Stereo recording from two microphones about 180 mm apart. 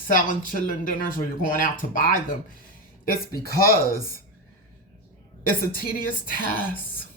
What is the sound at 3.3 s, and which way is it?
Speech, 55° left (ahead or behind).